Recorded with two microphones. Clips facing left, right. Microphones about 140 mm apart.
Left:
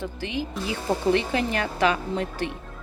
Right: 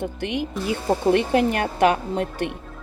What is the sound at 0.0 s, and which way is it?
A woman's voice, 65° right (ahead or behind).